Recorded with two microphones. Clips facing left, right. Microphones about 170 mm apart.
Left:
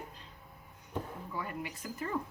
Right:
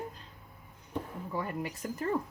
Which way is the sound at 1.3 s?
40° right (ahead or behind).